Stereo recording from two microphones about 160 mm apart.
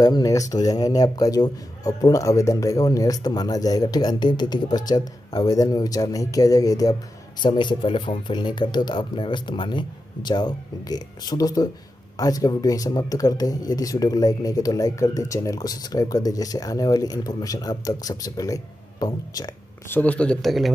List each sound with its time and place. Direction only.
0.0 s speech: 25° left (ahead or behind)
19.9 s speech: 10° left (ahead or behind)